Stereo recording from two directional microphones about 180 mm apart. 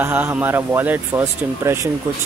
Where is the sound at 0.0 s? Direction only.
10° right (ahead or behind).